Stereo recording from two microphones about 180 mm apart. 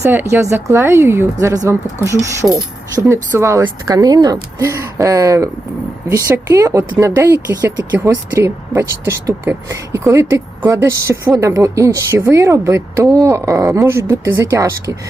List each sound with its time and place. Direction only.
0.0 s speech: 15° right (ahead or behind)